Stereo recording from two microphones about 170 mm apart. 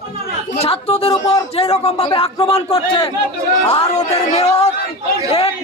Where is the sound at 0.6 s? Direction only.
35° left (ahead or behind).